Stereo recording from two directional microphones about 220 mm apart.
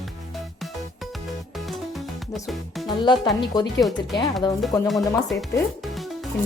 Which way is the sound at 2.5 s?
Centre (ahead or behind).